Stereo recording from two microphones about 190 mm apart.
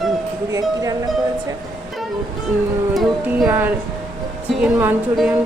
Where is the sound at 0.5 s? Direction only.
15° right (ahead or behind).